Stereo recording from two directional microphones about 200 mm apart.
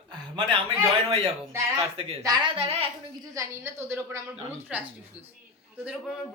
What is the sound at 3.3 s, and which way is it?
Speech, 15° right (ahead or behind).